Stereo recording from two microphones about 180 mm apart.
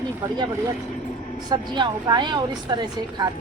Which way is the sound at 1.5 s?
25° right (ahead or behind).